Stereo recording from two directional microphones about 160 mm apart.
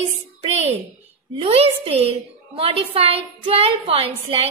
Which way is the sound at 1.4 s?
40° right (ahead or behind).